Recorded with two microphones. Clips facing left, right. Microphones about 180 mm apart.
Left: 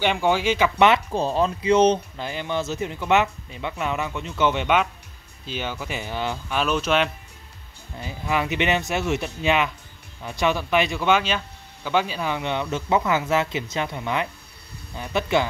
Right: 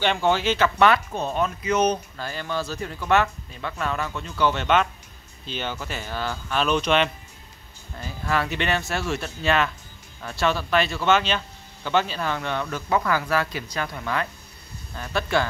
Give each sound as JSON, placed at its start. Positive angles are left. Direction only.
{"t": 0.0, "sound": "speech", "side_deg": 10}
{"t": 6.6, "sound": "speech", "side_deg": 5}
{"t": 8.0, "sound": "speech", "side_deg": 15}